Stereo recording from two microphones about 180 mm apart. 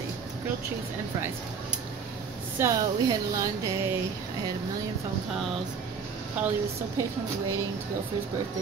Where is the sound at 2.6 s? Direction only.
20° right (ahead or behind).